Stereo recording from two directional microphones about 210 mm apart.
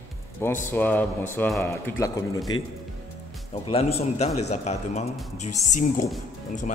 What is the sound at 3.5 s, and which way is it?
A man's voice, 25° left (ahead or behind).